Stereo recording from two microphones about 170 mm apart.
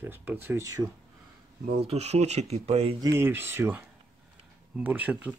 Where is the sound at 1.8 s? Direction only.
40° right (ahead or behind).